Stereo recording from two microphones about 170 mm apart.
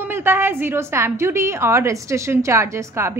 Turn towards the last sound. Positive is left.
turn(degrees=-15)  # may be behind; listen again after turning